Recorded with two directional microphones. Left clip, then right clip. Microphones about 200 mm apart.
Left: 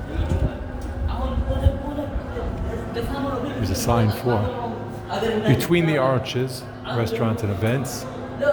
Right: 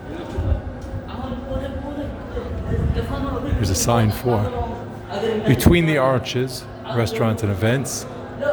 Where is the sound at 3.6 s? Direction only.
20° right (ahead or behind).